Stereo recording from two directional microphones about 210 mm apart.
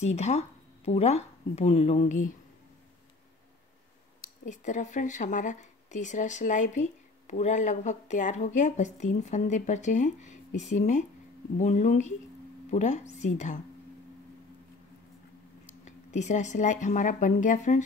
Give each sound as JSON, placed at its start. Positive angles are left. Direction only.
{"t": 0.0, "sound": "speech", "side_deg": 30}
{"t": 4.2, "sound": "speech", "side_deg": 35}
{"t": 15.6, "sound": "speech", "side_deg": 35}